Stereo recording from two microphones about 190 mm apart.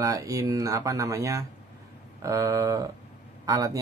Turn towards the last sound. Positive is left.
turn(degrees=-15)  # may be behind; listen again after turning